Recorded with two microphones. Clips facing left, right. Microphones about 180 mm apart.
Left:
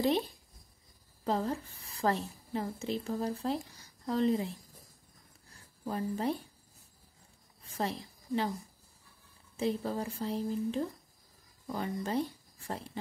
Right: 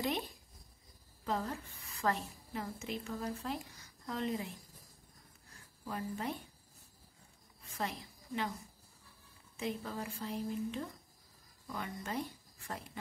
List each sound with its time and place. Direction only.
1.2 s a woman's voice: 30° left (ahead or behind)
5.9 s speech: 35° left (ahead or behind)
7.6 s a sound: 35° left (ahead or behind)
9.6 s speech: 35° left (ahead or behind)